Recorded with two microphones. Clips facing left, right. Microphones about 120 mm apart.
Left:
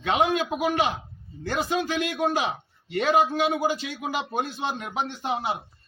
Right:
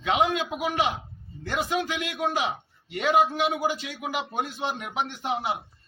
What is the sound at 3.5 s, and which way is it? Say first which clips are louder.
Speech: left 2 dB; 30° left (ahead or behind).